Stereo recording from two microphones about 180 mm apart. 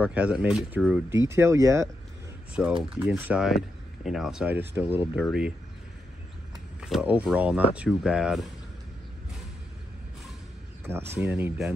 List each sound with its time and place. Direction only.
0.0 s speech: 10° right (ahead or behind)
2.6 s speech: 5° right (ahead or behind)
6.8 s speech: 5° right (ahead or behind)
10.9 s speech: 15° right (ahead or behind)